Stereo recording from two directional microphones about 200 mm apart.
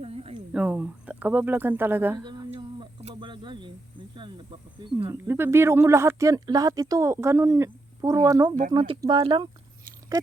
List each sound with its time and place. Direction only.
0.0 s a sound: 30° right (ahead or behind)
0.5 s speech: 5° right (ahead or behind)
2.2 s music: 20° right (ahead or behind)
4.8 s speech: 25° right (ahead or behind)
5.1 s speech: 10° right (ahead or behind)